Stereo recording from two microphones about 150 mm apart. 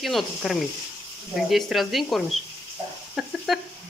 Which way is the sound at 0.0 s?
Centre (ahead or behind).